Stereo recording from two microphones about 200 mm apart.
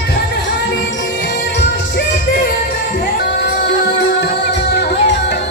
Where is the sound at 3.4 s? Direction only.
60° left (ahead or behind).